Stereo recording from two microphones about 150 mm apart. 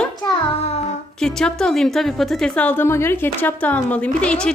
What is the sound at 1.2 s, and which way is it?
A woman's voice, 5° left (ahead or behind).